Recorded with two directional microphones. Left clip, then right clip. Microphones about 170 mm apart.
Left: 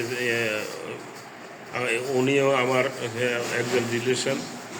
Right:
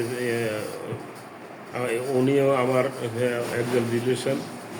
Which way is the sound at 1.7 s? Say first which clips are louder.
Even; 15° right (ahead or behind).